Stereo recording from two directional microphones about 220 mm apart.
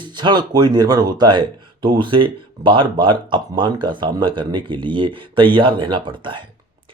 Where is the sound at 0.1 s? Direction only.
20° right (ahead or behind).